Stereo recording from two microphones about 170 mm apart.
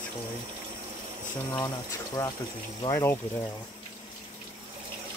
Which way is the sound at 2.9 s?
15° left (ahead or behind).